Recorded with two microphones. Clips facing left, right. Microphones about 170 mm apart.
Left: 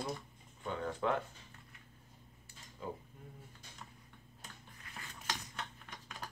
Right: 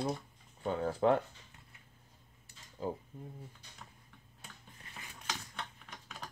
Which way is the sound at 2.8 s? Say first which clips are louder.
Right 6 dB; 35° right (ahead or behind).